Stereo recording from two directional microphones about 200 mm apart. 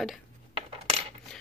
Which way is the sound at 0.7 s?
30° right (ahead or behind).